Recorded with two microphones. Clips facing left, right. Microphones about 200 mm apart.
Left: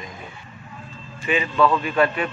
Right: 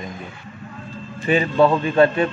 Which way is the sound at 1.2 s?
40° right (ahead or behind).